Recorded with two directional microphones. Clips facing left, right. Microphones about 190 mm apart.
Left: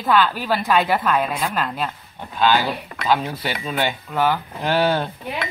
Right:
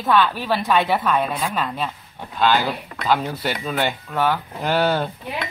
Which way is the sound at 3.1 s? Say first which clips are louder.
Even; centre (ahead or behind).